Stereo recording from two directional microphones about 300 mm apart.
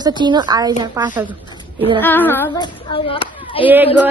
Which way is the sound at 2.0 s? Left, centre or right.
Centre.